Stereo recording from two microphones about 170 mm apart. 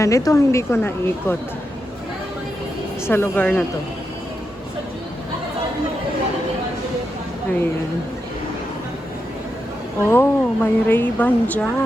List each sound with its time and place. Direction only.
0.0 s speech: 20° left (ahead or behind)
3.1 s speech: 10° left (ahead or behind)
10.1 s speech: 10° left (ahead or behind)